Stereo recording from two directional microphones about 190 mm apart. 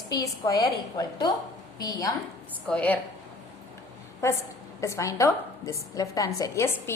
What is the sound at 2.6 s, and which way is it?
Speech, 5° left (ahead or behind).